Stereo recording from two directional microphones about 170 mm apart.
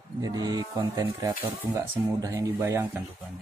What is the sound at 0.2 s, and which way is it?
Speech, 25° right (ahead or behind).